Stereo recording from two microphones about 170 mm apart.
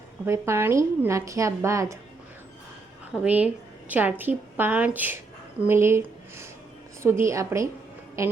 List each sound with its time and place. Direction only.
0.3 s speech: 15° right (ahead or behind)
3.2 s speech: 10° right (ahead or behind)